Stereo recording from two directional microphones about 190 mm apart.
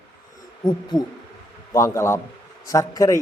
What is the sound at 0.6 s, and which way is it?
Hoot, 20° left (ahead or behind).